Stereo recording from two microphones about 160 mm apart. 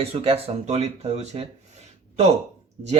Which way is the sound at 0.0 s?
35° right (ahead or behind).